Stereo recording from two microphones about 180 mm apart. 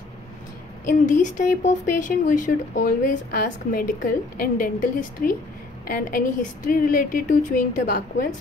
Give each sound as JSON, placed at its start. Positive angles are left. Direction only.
{"t": 0.8, "sound": "speech", "side_deg": 45}